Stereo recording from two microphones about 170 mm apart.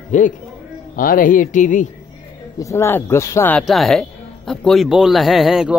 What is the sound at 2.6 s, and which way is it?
Speech, 15° left (ahead or behind).